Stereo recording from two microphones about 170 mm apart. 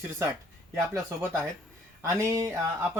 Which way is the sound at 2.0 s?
15° right (ahead or behind).